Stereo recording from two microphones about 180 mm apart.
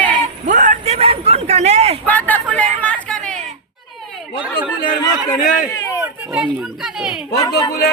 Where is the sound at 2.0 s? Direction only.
10° left (ahead or behind).